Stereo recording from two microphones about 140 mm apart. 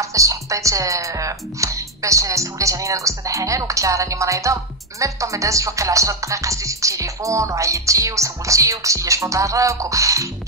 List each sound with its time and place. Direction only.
0.0 s speech: 20° right (ahead or behind)